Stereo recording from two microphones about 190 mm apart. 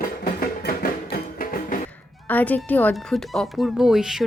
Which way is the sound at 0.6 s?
50° left (ahead or behind).